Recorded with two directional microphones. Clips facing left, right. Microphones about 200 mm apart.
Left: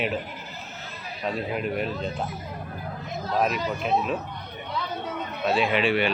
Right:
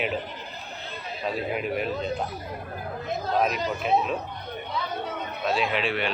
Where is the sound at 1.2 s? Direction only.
Centre (ahead or behind).